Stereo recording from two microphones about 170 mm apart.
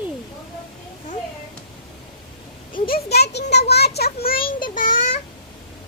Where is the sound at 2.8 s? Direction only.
65° left (ahead or behind).